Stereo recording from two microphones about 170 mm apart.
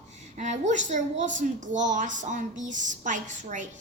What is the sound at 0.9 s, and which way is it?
A woman's voice, 50° right (ahead or behind).